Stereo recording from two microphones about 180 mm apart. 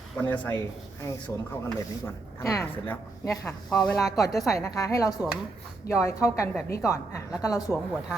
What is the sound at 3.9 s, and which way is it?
A woman's voice, 20° left (ahead or behind).